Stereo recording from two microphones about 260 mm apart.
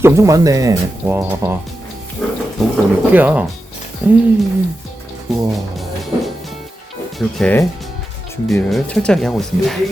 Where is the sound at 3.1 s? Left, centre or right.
Centre.